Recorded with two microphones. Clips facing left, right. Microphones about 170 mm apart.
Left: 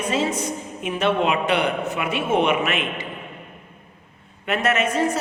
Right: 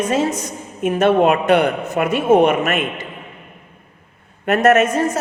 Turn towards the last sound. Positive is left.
turn(degrees=-45)  # may be behind; listen again after turning